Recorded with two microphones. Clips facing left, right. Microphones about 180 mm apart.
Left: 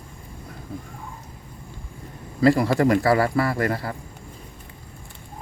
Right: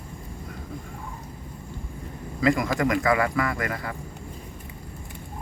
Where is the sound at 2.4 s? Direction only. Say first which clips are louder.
Left 5 dB; 35° left (ahead or behind).